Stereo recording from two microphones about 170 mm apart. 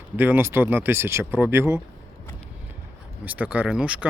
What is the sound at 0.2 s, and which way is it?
Speech, 10° right (ahead or behind).